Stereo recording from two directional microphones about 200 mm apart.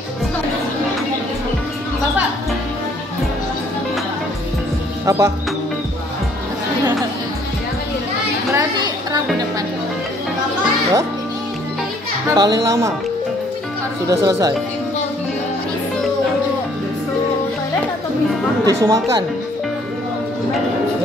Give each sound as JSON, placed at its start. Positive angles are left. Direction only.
{"t": 5.0, "sound": "music", "side_deg": -15}
{"t": 8.5, "sound": "a sound", "side_deg": -15}
{"t": 12.3, "sound": "speech", "side_deg": -20}
{"t": 14.0, "sound": "speech", "side_deg": -20}
{"t": 18.7, "sound": "speech", "side_deg": -15}